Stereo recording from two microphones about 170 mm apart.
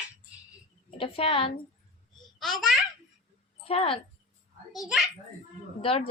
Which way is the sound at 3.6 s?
35° left (ahead or behind).